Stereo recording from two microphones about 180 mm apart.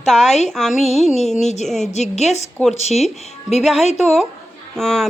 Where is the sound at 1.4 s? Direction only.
40° left (ahead or behind).